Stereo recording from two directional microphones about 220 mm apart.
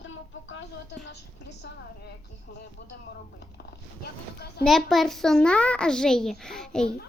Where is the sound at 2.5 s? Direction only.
45° left (ahead or behind).